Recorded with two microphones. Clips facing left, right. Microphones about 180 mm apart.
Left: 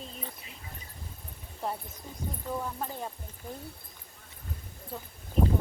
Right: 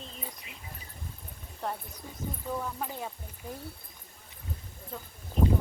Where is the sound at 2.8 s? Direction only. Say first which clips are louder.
Even; 5° right (ahead or behind).